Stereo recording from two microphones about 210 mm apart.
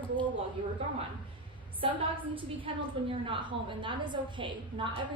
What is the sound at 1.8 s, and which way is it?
A woman's voice, 25° right (ahead or behind).